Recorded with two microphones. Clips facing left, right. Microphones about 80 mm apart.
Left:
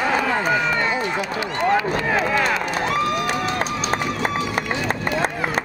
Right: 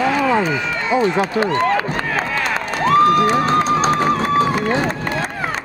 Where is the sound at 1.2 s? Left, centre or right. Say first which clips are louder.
Right 6 dB; right.